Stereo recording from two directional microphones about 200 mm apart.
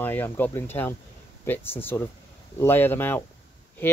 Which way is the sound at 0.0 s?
10° left (ahead or behind).